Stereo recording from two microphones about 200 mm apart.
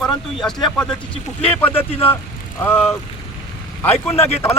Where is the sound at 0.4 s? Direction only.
5° left (ahead or behind).